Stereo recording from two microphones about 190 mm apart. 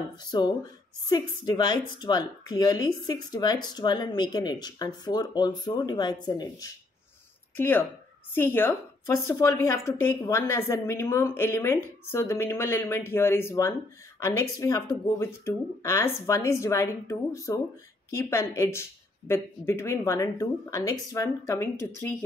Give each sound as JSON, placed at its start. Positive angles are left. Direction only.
{"t": 0.2, "sound": "speech", "side_deg": 20}
{"t": 7.5, "sound": "a woman's voice", "side_deg": 10}